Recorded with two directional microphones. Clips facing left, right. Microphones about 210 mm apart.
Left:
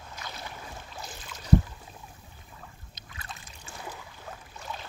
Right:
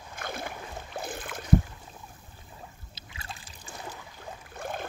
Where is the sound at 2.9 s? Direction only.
30° right (ahead or behind).